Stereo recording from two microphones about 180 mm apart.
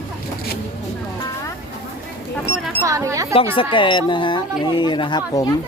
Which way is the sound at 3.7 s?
25° left (ahead or behind).